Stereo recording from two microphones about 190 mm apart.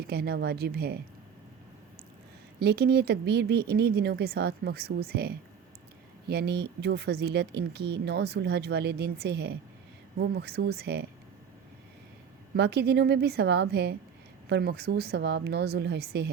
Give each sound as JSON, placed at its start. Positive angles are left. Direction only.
{"t": 0.1, "sound": "speech", "side_deg": -55}
{"t": 2.6, "sound": "speech", "side_deg": -55}
{"t": 12.5, "sound": "speech", "side_deg": -60}